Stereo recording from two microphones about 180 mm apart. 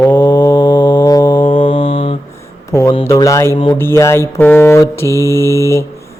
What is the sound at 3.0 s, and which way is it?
Mantra, 15° left (ahead or behind).